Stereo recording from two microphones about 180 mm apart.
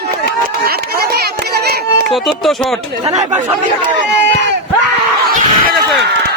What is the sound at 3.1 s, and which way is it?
Speech, 40° right (ahead or behind).